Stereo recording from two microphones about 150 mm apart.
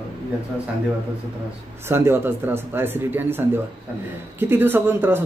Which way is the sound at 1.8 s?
15° right (ahead or behind).